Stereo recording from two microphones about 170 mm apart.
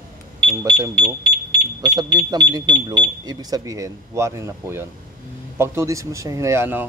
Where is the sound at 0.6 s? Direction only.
20° right (ahead or behind).